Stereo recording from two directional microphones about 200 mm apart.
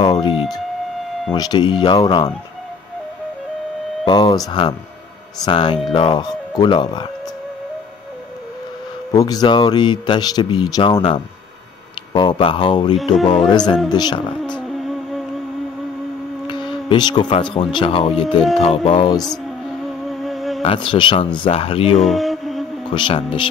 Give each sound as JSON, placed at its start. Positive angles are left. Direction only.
{"t": 0.0, "sound": "a man's voice", "side_deg": 20}
{"t": 4.0, "sound": "a man's voice", "side_deg": 20}
{"t": 9.1, "sound": "a man's voice", "side_deg": 20}
{"t": 13.0, "sound": "music", "side_deg": 0}
{"t": 13.9, "sound": "a man's voice", "side_deg": 20}
{"t": 14.4, "sound": "music", "side_deg": 0}
{"t": 16.4, "sound": "a man's voice", "side_deg": 25}
{"t": 20.1, "sound": "music", "side_deg": 0}
{"t": 20.6, "sound": "a man's voice", "side_deg": 25}
{"t": 22.0, "sound": "music", "side_deg": 0}
{"t": 22.9, "sound": "a man's voice", "side_deg": 25}